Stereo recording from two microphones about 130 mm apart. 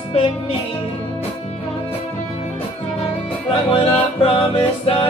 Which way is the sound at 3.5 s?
40° left (ahead or behind).